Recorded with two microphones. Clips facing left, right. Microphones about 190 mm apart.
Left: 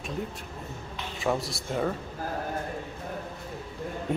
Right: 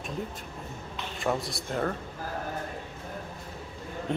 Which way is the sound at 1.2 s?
Centre (ahead or behind).